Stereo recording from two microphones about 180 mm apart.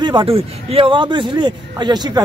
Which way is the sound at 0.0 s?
30° right (ahead or behind).